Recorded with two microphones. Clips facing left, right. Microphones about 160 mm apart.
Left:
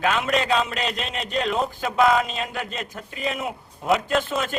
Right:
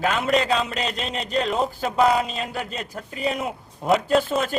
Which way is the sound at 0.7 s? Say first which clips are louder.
Even; centre (ahead or behind).